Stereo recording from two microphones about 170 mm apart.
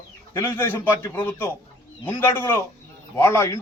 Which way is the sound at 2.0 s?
10° left (ahead or behind).